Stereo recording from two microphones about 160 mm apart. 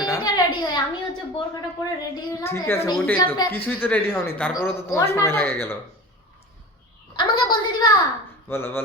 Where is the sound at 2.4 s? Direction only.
15° left (ahead or behind).